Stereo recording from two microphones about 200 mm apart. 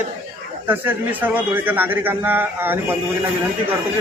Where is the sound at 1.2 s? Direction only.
10° right (ahead or behind).